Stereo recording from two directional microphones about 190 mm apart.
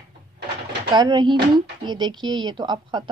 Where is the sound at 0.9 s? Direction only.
20° right (ahead or behind).